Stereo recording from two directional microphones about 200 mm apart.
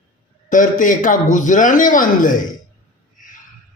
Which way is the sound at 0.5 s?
40° left (ahead or behind).